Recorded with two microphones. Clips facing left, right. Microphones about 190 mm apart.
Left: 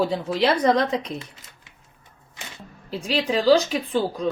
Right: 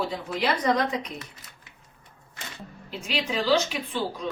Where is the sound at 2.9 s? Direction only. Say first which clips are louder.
Left 6 dB; 35° left (ahead or behind).